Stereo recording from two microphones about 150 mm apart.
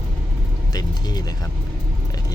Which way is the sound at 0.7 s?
25° left (ahead or behind).